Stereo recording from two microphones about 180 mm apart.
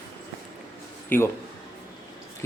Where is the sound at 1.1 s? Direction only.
10° left (ahead or behind).